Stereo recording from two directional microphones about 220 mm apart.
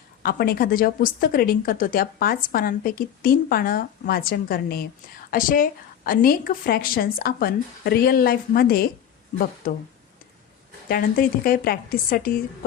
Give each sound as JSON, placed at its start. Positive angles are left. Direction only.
{"t": 0.2, "sound": "a woman's voice", "side_deg": 45}
{"t": 10.8, "sound": "a woman's voice", "side_deg": 40}